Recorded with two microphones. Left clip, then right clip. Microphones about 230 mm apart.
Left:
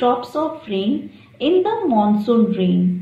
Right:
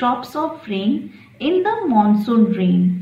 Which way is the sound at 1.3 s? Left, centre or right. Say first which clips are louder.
Left 1 dB; right.